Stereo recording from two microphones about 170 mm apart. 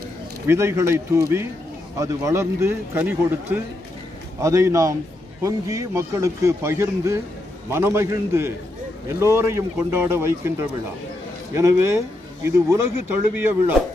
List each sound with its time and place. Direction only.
0.5 s a man's voice: 15° right (ahead or behind)